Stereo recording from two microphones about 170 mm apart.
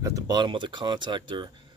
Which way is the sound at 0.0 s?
20° right (ahead or behind).